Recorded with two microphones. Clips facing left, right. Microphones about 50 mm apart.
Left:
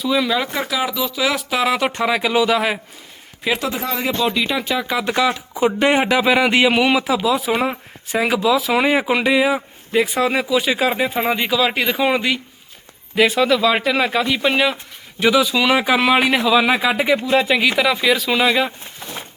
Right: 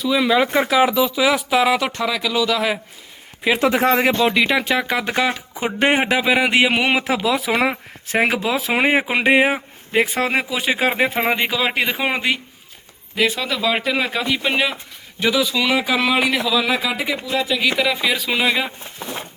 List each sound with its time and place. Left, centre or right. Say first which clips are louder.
0.2 s speech: right 3 dB; centre
1.8 s speech: left 3 dB; centre
2.0 s speech: left 4 dB; left
3.7 s speech: right 6 dB; right
4.9 s speech: left 2 dB; right
6.1 s speech: left 1 dB; centre
7.0 s speech: left 1 dB; right
8.2 s speech: left 3 dB; right
13.1 s speech: left 5 dB; centre
15.2 s speech: left 3 dB; centre
16.1 s a man's voice: left 3 dB; left
17.6 s speech: left 2 dB; centre